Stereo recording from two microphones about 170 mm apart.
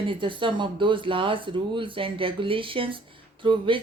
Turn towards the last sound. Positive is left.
turn(degrees=-30)  # may be behind; listen again after turning